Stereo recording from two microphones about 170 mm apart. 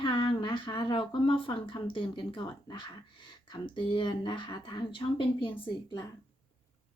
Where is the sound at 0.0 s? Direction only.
30° left (ahead or behind).